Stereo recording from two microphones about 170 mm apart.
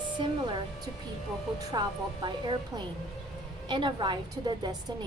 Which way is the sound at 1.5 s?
25° right (ahead or behind).